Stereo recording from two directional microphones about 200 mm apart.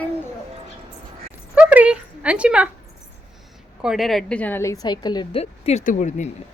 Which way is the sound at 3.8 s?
Centre (ahead or behind).